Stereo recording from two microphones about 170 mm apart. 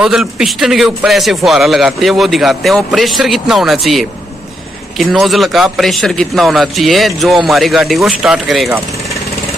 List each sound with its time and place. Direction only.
0.0 s a man's voice: 5° right (ahead or behind)